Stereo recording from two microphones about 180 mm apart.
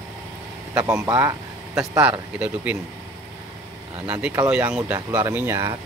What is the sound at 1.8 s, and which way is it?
Speech, 5° right (ahead or behind).